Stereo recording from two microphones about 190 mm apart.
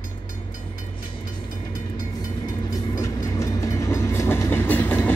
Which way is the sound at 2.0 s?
20° left (ahead or behind).